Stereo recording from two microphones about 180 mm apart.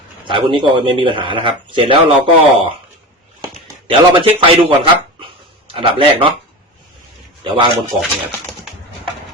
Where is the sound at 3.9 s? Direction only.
30° right (ahead or behind).